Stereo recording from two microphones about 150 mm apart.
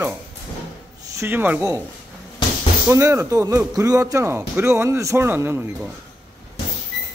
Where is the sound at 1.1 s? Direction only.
15° right (ahead or behind).